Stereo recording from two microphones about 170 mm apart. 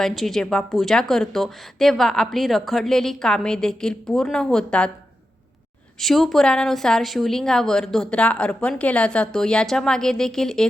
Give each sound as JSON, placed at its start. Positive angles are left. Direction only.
{"t": 0.0, "sound": "a woman's voice", "side_deg": 0}
{"t": 6.0, "sound": "a woman's voice", "side_deg": 0}